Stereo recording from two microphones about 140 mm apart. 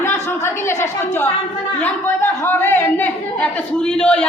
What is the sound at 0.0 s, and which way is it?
Speech, 20° left (ahead or behind).